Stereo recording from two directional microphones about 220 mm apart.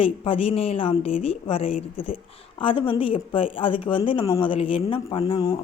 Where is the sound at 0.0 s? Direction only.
25° left (ahead or behind).